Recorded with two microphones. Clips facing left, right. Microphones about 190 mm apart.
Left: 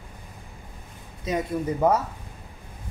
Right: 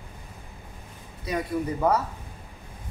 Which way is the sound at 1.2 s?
20° left (ahead or behind).